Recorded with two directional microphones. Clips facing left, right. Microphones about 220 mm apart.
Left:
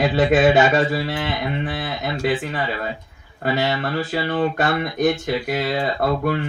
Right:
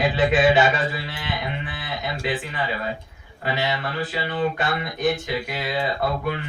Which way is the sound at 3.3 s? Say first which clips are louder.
Left 4 dB; 45° left (ahead or behind).